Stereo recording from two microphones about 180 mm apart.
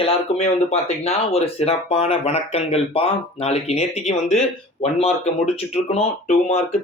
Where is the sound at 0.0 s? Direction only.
35° left (ahead or behind).